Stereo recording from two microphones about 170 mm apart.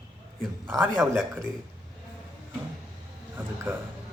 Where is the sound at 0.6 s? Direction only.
15° right (ahead or behind).